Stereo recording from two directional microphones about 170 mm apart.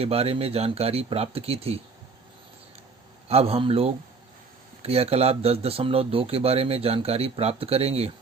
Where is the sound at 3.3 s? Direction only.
35° right (ahead or behind).